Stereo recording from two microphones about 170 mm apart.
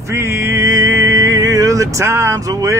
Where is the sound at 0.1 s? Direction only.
15° right (ahead or behind).